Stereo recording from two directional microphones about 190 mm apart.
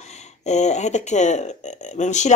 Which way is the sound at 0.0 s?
35° left (ahead or behind).